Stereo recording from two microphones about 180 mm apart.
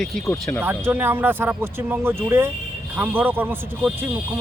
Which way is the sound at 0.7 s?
10° right (ahead or behind).